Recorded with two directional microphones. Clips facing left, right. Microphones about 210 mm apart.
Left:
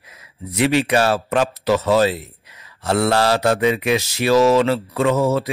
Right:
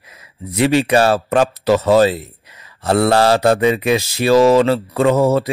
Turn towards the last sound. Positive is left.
turn(degrees=-35)  # may be behind; listen again after turning